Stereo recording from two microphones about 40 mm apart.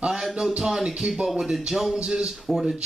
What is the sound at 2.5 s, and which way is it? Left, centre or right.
Speech, centre.